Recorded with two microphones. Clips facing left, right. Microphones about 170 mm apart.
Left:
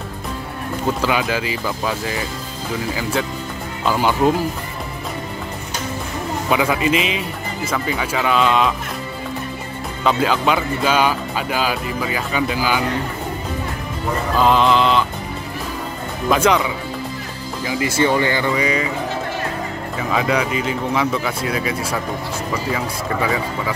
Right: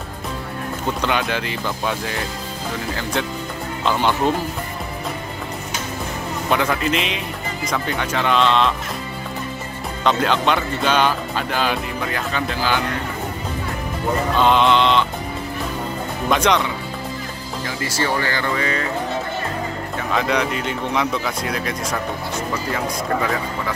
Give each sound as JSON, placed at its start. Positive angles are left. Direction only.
{"t": 1.0, "sound": "speech", "side_deg": 5}
{"t": 6.5, "sound": "speech", "side_deg": 5}
{"t": 10.0, "sound": "speech", "side_deg": 5}
{"t": 14.3, "sound": "speech", "side_deg": 0}
{"t": 16.3, "sound": "speech", "side_deg": 5}
{"t": 17.9, "sound": "speech", "side_deg": 20}
{"t": 20.0, "sound": "speech", "side_deg": 5}